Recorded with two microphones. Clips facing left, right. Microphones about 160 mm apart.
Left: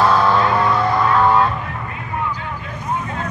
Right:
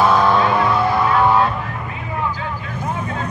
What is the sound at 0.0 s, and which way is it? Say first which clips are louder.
Vehicle: even; 5° right (ahead or behind).